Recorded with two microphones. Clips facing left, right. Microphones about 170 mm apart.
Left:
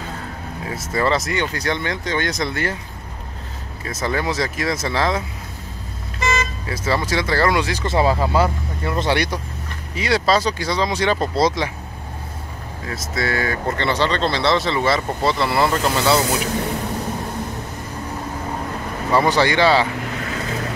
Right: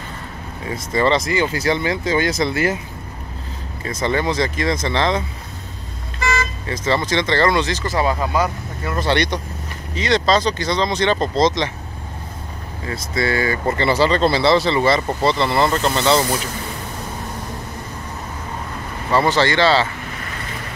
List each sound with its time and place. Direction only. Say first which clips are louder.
0.7 s speech: right 2 dB; 5° left (ahead or behind)
3.8 s speech: right 3 dB; centre (ahead or behind)
6.2 s vehicle: even; 20° left (ahead or behind)
6.6 s speech: right 2 dB; 5° left (ahead or behind)
7.8 s speech: left 2 dB; 25° left (ahead or behind)
9.0 s speech: right 3 dB; 5° left (ahead or behind)
12.8 s speech: right 3 dB; centre (ahead or behind)
19.1 s speech: even; 15° left (ahead or behind)